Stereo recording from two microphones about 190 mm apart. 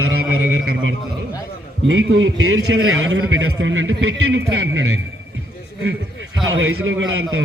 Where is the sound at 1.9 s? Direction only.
85° right.